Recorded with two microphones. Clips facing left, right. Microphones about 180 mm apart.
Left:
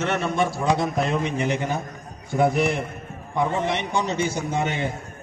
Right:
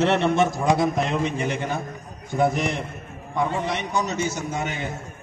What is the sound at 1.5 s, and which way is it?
A man's voice, 10° left (ahead or behind).